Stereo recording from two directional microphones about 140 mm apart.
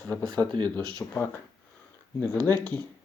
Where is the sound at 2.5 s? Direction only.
15° left (ahead or behind).